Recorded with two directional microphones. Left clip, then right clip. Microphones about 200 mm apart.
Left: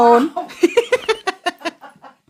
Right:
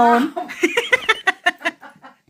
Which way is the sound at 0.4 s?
30° left (ahead or behind).